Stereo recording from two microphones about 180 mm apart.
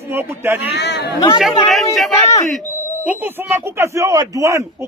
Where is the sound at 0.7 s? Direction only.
70° left (ahead or behind).